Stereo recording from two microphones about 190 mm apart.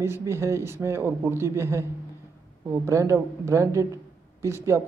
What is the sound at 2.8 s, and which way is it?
A man's voice, 15° right (ahead or behind).